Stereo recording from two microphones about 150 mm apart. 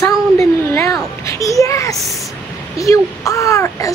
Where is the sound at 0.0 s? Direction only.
20° left (ahead or behind).